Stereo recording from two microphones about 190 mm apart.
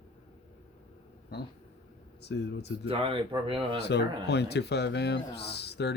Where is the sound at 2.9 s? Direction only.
25° right (ahead or behind).